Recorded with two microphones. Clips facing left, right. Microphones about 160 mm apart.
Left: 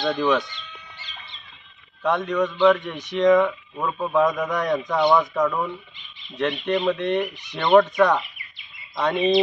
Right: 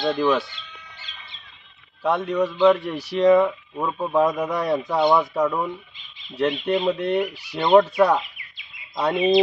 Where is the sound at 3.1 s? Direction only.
35° right (ahead or behind).